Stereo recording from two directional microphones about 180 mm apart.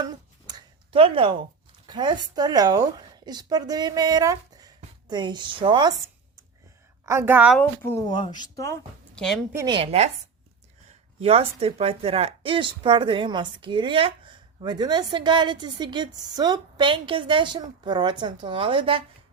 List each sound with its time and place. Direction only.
0.0 s a sound: 20° right (ahead or behind)
1.9 s a woman's voice: 25° right (ahead or behind); by 7.6 s 5° right (ahead or behind)
7.6 s speech: 10° left (ahead or behind)
8.1 s speech: 25° left (ahead or behind)
9.1 s a woman's voice: centre (ahead or behind)
9.6 s speech: 30° right (ahead or behind)
11.2 s speech: 30° right (ahead or behind)